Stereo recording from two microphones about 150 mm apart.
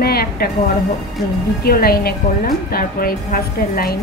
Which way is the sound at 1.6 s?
90° left.